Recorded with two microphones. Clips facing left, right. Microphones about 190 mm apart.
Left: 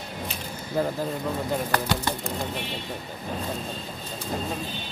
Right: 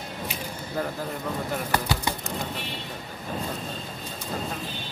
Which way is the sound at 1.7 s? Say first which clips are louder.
Left 1 dB; 10° right (ahead or behind).